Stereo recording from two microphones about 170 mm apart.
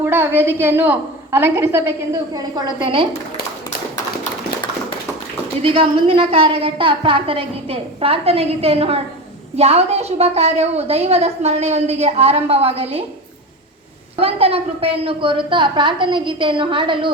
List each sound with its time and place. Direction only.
0.0 s a woman's voice: 15° right (ahead or behind); by 3.1 s 30° right (ahead or behind)
5.6 s a woman's voice: 30° right (ahead or behind)
14.2 s a woman's voice: 35° right (ahead or behind)